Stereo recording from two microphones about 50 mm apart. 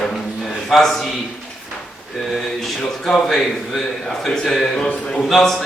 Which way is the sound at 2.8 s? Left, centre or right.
Centre.